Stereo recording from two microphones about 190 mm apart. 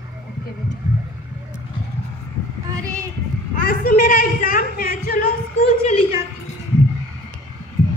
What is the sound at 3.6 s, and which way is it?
A woman's voice, 45° left (ahead or behind).